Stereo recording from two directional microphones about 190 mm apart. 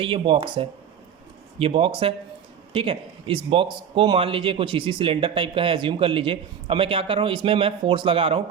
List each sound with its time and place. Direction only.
0.0 s speech: 25° right (ahead or behind)